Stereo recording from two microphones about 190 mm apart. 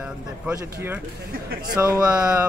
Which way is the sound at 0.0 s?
10° right (ahead or behind).